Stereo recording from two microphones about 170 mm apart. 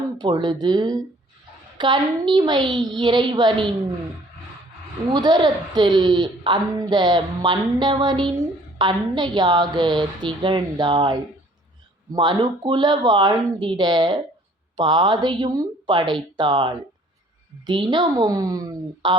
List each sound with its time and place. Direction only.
0.2 s a woman's voice: 25° right (ahead or behind)
5.1 s a woman's voice: 25° right (ahead or behind)